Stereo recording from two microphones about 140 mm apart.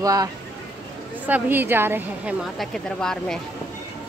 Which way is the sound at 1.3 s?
10° right (ahead or behind).